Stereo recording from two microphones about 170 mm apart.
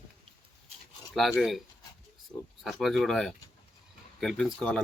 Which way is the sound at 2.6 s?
Centre (ahead or behind).